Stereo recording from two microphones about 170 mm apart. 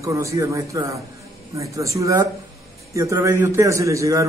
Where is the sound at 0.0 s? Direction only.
20° right (ahead or behind).